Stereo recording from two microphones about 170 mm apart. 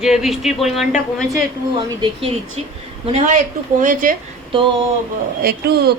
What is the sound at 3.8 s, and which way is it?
Speech, 50° right (ahead or behind).